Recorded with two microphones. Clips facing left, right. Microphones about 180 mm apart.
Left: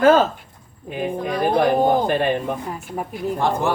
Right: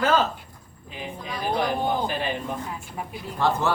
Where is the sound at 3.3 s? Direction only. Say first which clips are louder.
Left 1 dB; 15° left (ahead or behind).